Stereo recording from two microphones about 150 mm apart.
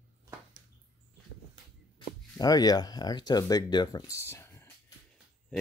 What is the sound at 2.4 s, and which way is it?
Speech, 25° left (ahead or behind).